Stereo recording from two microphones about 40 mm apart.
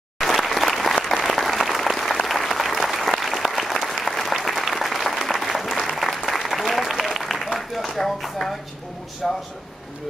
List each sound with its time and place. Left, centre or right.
0.2 s applause: centre
6.6 s a sound: centre
9.2 s speech: centre